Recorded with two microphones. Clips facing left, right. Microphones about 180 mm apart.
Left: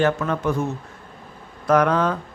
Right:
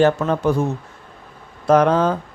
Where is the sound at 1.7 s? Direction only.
30° right (ahead or behind).